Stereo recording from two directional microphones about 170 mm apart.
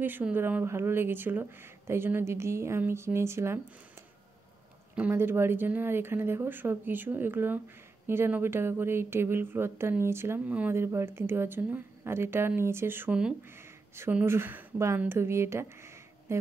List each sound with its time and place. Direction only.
0.0 s speech: 10° right (ahead or behind)
4.9 s speech: 10° right (ahead or behind)